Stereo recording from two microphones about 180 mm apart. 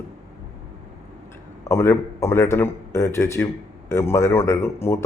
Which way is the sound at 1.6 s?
15° left (ahead or behind).